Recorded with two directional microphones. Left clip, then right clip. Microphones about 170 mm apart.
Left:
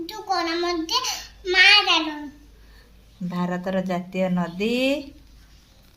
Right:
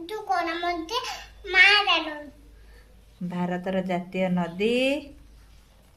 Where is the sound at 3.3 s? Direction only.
10° right (ahead or behind).